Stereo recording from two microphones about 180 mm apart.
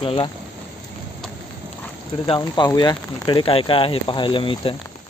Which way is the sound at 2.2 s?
25° left (ahead or behind).